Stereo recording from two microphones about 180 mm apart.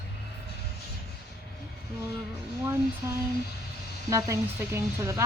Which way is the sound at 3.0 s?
15° right (ahead or behind).